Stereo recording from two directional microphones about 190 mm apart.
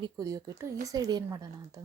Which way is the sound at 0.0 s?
20° right (ahead or behind).